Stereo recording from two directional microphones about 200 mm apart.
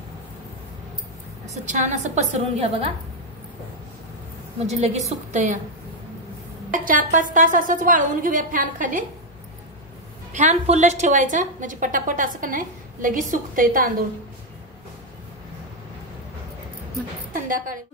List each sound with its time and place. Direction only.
1.5 s a woman's voice: 35° right (ahead or behind)
4.6 s a woman's voice: 35° right (ahead or behind)
6.7 s a woman's voice: 40° right (ahead or behind)
10.3 s a woman's voice: 35° right (ahead or behind)
17.3 s music: 40° right (ahead or behind)